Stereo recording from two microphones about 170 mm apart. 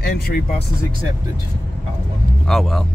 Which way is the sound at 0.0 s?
60° left (ahead or behind).